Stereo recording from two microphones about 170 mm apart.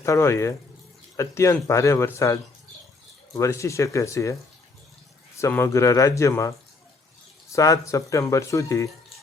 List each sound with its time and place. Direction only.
0.0 s a man's voice: 15° left (ahead or behind)
5.4 s a man's voice: 15° left (ahead or behind)
7.5 s speech: 20° left (ahead or behind)